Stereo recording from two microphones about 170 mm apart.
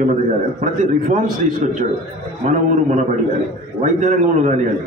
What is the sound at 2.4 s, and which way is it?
A man's voice, 50° right (ahead or behind).